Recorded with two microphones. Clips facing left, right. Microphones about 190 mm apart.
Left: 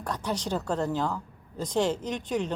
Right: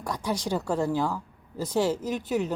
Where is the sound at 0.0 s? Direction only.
10° right (ahead or behind).